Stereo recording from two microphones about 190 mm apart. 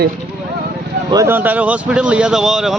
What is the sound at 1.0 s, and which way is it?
Speech, 15° right (ahead or behind).